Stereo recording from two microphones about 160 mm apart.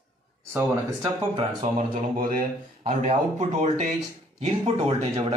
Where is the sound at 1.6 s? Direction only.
55° right (ahead or behind).